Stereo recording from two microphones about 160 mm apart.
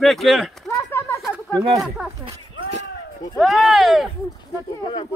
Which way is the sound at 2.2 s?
40° right (ahead or behind).